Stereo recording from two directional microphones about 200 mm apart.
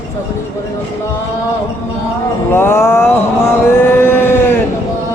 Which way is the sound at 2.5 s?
10° left (ahead or behind).